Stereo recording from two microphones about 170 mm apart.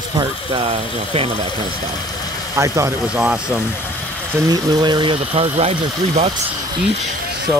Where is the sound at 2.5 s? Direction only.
15° right (ahead or behind).